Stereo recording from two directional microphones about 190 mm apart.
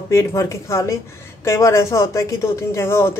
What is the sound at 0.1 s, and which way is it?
Speech, 15° left (ahead or behind).